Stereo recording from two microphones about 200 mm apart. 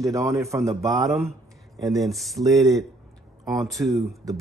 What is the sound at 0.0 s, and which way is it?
A man's voice, 15° right (ahead or behind).